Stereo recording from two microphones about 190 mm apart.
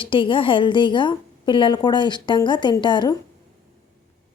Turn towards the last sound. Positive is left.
turn(degrees=25)  # may be behind; listen again after turning